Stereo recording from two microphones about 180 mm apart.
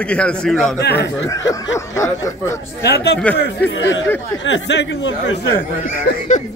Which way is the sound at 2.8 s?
65° left (ahead or behind).